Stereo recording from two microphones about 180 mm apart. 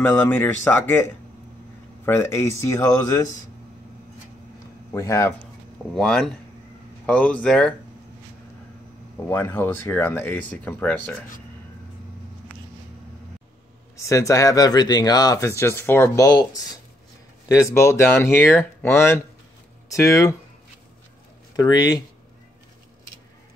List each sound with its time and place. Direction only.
0.0 s speech: 10° left (ahead or behind)
2.0 s speech: 15° left (ahead or behind)
4.9 s speech: 15° left (ahead or behind)
5.9 s speech: 5° left (ahead or behind)
9.3 s speech: 10° left (ahead or behind)
13.9 s speech: 15° left (ahead or behind)
21.5 s speech: 20° left (ahead or behind)